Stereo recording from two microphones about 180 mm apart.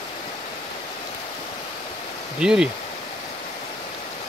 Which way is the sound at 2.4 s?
5° right (ahead or behind).